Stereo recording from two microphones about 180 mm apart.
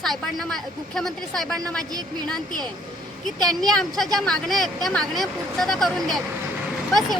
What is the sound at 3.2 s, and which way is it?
Speech, centre (ahead or behind).